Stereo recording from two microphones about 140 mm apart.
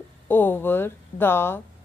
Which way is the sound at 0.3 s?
15° left (ahead or behind).